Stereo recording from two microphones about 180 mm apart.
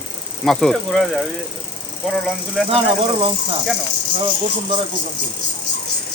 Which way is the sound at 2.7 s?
30° right (ahead or behind).